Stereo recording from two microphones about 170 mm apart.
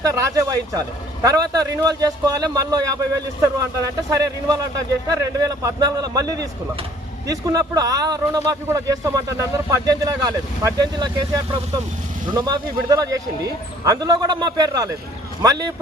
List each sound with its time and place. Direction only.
0.0 s speech: 20° right (ahead or behind)
4.1 s speech: 20° right (ahead or behind)